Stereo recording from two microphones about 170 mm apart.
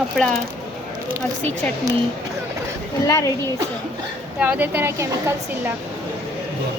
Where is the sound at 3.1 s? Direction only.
20° left (ahead or behind).